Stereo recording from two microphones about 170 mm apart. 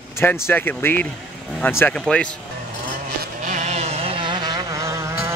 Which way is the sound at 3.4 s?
45° right (ahead or behind).